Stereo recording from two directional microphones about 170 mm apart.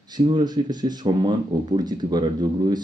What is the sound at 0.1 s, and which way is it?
Speech, 25° right (ahead or behind).